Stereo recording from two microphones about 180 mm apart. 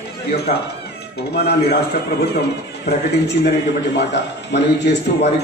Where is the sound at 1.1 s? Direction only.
65° left (ahead or behind).